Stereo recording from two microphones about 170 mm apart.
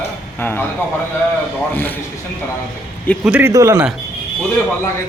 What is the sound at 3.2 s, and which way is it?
Speech, 10° right (ahead or behind).